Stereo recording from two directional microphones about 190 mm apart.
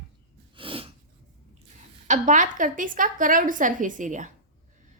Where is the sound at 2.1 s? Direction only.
40° right (ahead or behind).